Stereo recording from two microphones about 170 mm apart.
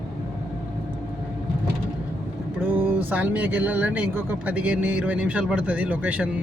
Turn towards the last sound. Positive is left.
turn(degrees=-5)  # may be behind; listen again after turning